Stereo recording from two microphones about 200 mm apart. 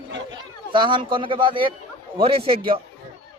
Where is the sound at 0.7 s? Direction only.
25° right (ahead or behind).